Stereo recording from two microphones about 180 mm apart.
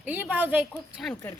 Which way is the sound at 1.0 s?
5° left (ahead or behind).